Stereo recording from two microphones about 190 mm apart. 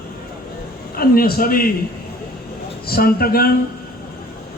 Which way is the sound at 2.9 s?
50° left (ahead or behind).